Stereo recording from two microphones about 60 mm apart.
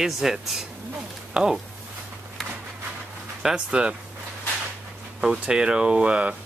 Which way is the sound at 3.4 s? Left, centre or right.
Centre.